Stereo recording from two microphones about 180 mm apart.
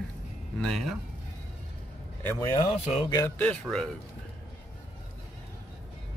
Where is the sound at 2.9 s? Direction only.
30° left (ahead or behind).